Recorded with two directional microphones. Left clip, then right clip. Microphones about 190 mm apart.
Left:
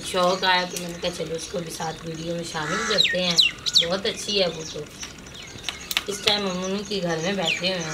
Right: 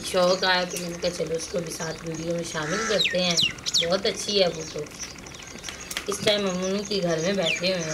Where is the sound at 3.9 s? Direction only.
Centre (ahead or behind).